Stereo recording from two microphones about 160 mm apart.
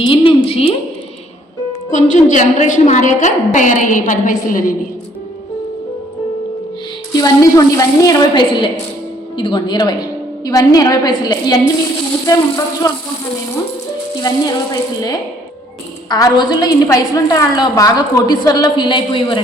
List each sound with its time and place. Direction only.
0.0 s a woman's voice: 30° left (ahead or behind)
1.9 s a woman's voice: 50° left (ahead or behind)
7.2 s a woman's voice: 20° left (ahead or behind)
8.4 s a woman's voice: 30° left (ahead or behind)
14.2 s a woman's voice: 25° left (ahead or behind)